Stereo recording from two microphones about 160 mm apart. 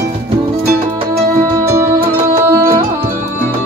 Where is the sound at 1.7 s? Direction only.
15° right (ahead or behind).